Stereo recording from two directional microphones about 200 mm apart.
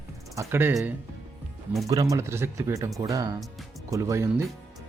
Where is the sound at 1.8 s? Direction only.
15° right (ahead or behind).